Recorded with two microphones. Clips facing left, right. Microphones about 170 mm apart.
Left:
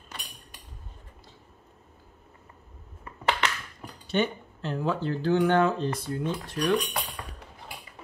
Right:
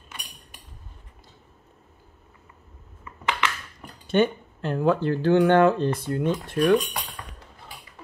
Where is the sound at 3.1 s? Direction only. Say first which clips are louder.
Even; 35° left (ahead or behind).